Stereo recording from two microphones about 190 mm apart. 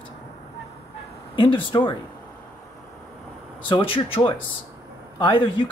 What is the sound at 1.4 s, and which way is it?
Speech, 25° left (ahead or behind).